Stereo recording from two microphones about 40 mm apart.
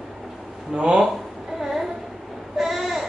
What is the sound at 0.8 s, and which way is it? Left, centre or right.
Speech, right.